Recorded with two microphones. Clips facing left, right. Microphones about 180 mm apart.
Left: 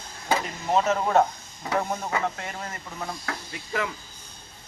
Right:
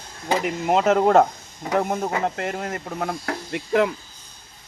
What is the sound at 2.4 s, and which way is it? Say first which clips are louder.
Speech: right 8 dB; 65° right (ahead or behind).